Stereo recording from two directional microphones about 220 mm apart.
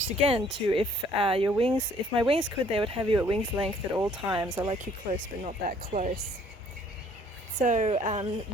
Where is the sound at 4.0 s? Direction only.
15° right (ahead or behind).